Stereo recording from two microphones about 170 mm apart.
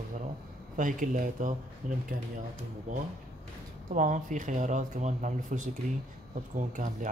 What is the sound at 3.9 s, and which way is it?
Speech, 45° right (ahead or behind).